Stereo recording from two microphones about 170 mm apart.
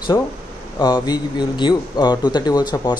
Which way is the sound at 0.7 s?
25° left (ahead or behind).